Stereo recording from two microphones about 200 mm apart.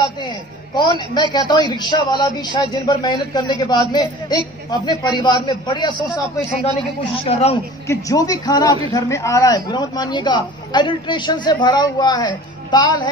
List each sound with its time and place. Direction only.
0.0 s a sound: 20° left (ahead or behind)
1.3 s a woman's voice: 20° left (ahead or behind)
7.2 s speech: 30° left (ahead or behind)
7.8 s a man's voice: 15° left (ahead or behind)